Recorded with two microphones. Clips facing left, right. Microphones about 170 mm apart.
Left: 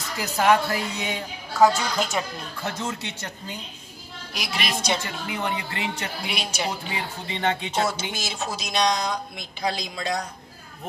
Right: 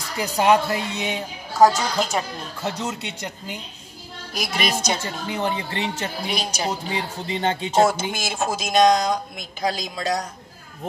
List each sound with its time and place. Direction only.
0.4 s speech: 20° right (ahead or behind)
1.7 s speech: 35° right (ahead or behind)
2.6 s speech: 20° right (ahead or behind)
4.3 s a woman's voice: 45° right (ahead or behind)
5.0 s speech: 30° right (ahead or behind)